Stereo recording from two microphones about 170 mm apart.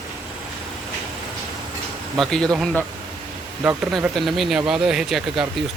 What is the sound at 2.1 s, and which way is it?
Speech, 5° left (ahead or behind).